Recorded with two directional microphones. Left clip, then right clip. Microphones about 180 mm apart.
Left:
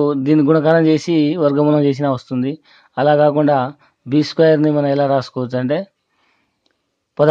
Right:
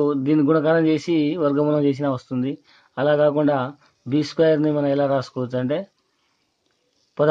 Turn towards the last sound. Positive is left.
turn(degrees=40)  # may be behind; listen again after turning